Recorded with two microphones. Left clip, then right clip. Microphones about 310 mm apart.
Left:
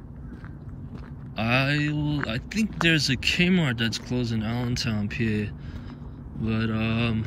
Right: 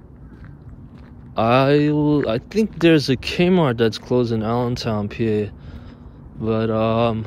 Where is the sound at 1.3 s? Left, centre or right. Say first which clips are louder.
Right 9 dB; centre.